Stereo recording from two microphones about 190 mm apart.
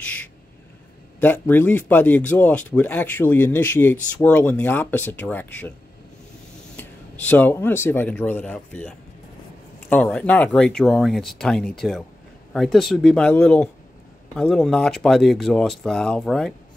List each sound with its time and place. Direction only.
0.0 s owl: 10° left (ahead or behind)
1.2 s speech: 10° left (ahead or behind)
6.8 s speech: 10° left (ahead or behind)